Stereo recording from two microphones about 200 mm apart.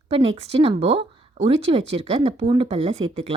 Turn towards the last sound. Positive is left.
turn(degrees=-30)  # may be behind; listen again after turning